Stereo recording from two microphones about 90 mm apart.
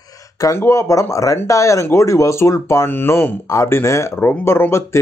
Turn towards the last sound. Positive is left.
turn(degrees=30)  # may be behind; listen again after turning